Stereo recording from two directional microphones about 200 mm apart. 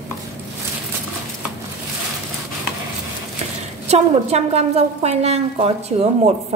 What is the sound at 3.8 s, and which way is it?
A woman's voice, 30° right (ahead or behind).